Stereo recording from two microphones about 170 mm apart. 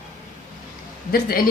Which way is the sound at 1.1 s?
60° left (ahead or behind).